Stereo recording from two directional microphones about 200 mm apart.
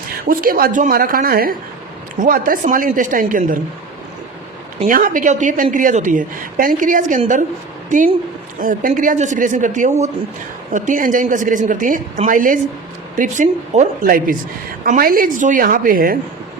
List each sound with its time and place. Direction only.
0.3 s a woman's voice: 45° right (ahead or behind)
4.9 s a woman's voice: 45° right (ahead or behind)